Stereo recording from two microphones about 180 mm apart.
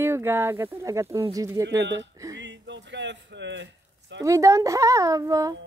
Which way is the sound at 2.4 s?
80° right.